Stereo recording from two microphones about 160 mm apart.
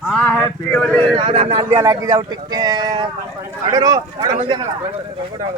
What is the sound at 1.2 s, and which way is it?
Speech, 35° right (ahead or behind).